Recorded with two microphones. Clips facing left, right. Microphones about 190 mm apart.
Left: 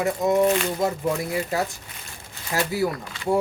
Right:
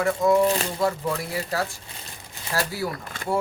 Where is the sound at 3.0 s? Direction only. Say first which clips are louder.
Left 4 dB; 50° right (ahead or behind).